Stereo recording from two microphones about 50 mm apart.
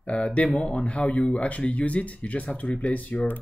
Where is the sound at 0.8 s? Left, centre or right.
Left.